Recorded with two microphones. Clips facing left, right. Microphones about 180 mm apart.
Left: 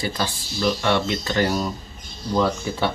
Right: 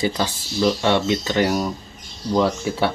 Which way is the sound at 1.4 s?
10° right (ahead or behind).